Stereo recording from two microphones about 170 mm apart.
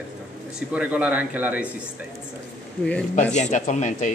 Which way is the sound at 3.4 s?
45° left (ahead or behind).